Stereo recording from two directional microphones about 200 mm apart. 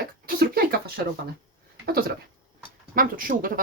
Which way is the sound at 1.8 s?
50° right (ahead or behind).